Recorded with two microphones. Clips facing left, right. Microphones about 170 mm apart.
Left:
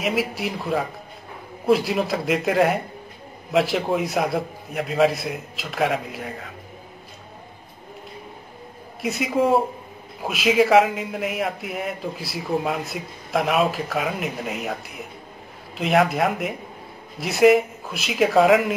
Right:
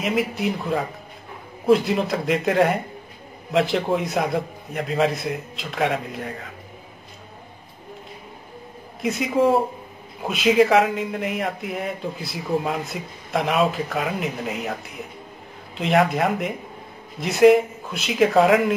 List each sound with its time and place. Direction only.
0.0 s speech: 5° left (ahead or behind)
9.0 s speech: centre (ahead or behind)